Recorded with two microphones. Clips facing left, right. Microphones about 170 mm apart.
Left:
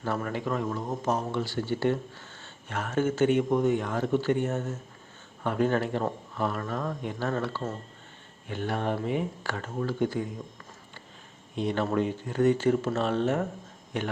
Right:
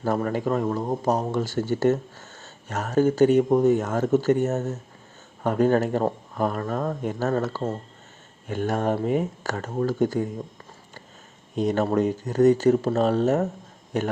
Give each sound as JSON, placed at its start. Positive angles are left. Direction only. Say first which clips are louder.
{"t": 0.0, "sound": "speech", "louder": "right 6 dB", "side_deg": -40}
{"t": 11.5, "sound": "speech", "louder": "right 5 dB", "side_deg": -45}